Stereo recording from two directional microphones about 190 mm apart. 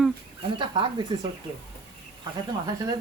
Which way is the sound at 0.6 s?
25° right (ahead or behind).